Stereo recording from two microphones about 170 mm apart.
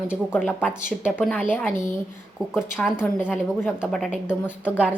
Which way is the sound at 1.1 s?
10° left (ahead or behind).